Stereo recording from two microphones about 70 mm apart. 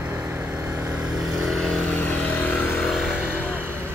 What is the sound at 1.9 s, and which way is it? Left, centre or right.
Vehicle, left.